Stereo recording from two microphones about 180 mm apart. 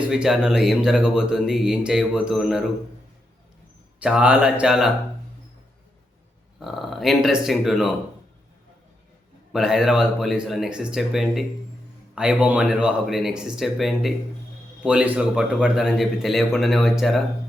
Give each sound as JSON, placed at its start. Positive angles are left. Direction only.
{"t": 0.1, "sound": "speech", "side_deg": -5}
{"t": 4.0, "sound": "speech", "side_deg": -5}
{"t": 6.6, "sound": "speech", "side_deg": 0}
{"t": 9.5, "sound": "speech", "side_deg": 0}